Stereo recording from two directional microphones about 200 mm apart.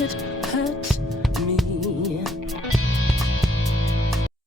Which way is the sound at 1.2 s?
Centre (ahead or behind).